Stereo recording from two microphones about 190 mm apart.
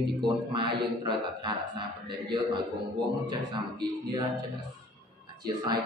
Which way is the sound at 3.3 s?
20° right (ahead or behind).